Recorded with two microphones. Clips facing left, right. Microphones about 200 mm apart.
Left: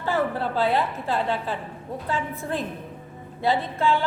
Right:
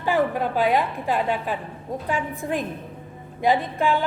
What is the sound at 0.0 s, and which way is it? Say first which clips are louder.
A woman's voice: right 3 dB; 15° right (ahead or behind).